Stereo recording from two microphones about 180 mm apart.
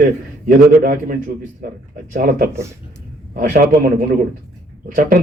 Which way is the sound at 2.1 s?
50° right (ahead or behind).